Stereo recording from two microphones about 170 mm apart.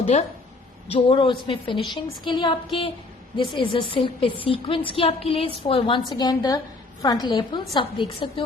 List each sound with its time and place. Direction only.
0.0 s a woman's voice: 40° left (ahead or behind)